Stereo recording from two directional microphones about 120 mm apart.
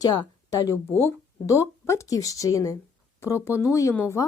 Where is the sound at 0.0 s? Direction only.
30° left (ahead or behind).